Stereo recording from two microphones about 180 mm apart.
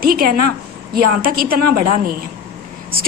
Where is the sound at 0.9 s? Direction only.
55° right (ahead or behind).